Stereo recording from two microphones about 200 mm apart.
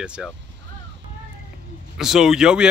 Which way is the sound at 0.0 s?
5° right (ahead or behind).